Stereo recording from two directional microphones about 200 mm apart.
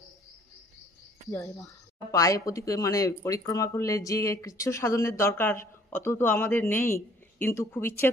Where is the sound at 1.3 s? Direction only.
15° left (ahead or behind).